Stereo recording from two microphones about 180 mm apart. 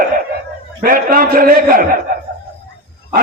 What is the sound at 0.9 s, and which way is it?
A man's voice, 50° right (ahead or behind).